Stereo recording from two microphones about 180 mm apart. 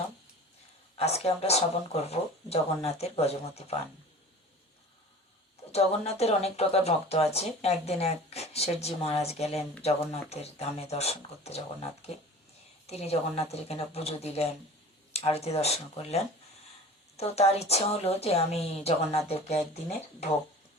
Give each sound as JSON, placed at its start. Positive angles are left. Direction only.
{"t": 0.9, "sound": "speech", "side_deg": 35}
{"t": 5.7, "sound": "speech", "side_deg": 35}